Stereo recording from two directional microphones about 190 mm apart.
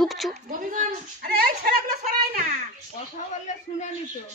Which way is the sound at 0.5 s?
45° right (ahead or behind).